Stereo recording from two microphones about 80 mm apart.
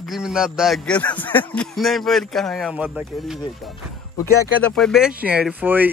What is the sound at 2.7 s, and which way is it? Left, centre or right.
Speech, centre.